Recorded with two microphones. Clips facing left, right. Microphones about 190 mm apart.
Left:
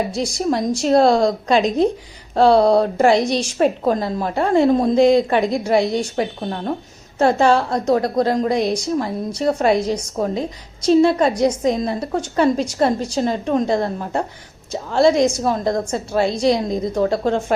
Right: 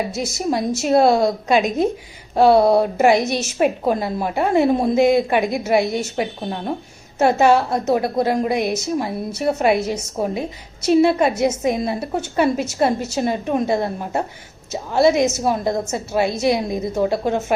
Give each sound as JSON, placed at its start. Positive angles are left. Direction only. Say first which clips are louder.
{"t": 0.3, "sound": "a woman's voice", "louder": "left 1 dB", "side_deg": -5}
{"t": 7.3, "sound": "a woman's voice", "louder": "right 1 dB", "side_deg": -10}
{"t": 13.7, "sound": "a woman's voice", "louder": "left 1 dB", "side_deg": -20}
{"t": 14.7, "sound": "a woman's voice", "louder": "left 1 dB", "side_deg": -5}